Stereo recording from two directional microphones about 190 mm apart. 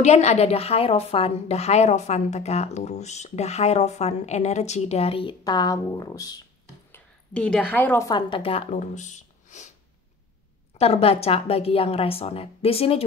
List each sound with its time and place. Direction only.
0.0 s a woman's voice: 35° left (ahead or behind); by 6.4 s 20° left (ahead or behind)
6.9 s a sound: 5° left (ahead or behind)
7.7 s a woman's voice: 10° left (ahead or behind)
8.1 s a woman's voice: 25° left (ahead or behind)
10.8 s a woman's voice: 30° left (ahead or behind)